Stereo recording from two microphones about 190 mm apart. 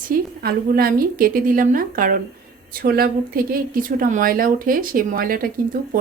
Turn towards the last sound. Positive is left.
turn(degrees=-50)  # may be behind; listen again after turning